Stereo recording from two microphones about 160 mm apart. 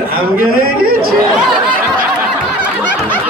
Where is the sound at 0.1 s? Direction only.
65° right (ahead or behind).